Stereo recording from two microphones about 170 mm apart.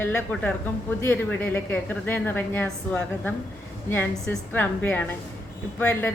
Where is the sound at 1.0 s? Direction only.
10° left (ahead or behind).